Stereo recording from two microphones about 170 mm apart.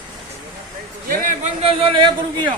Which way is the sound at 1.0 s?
55° right (ahead or behind).